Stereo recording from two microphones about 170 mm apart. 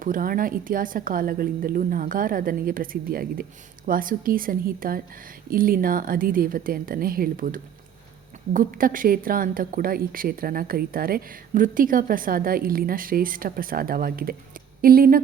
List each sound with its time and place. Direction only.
0.0 s a woman's voice: 55° right (ahead or behind)